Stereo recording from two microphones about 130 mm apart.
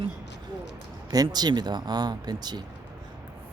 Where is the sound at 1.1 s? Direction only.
30° right (ahead or behind).